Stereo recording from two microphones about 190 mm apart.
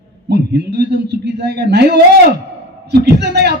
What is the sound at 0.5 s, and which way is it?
A man's voice, 60° right (ahead or behind).